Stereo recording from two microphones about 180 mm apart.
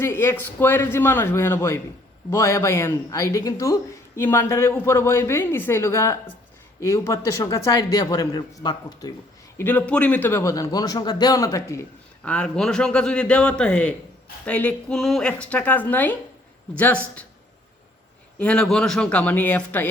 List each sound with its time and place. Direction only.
0.0 s a man's voice: 15° left (ahead or behind)
9.6 s a man's voice: 10° left (ahead or behind)
18.3 s a man's voice: 5° left (ahead or behind)